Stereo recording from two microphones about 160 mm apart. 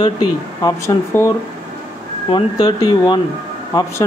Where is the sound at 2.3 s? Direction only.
25° left (ahead or behind).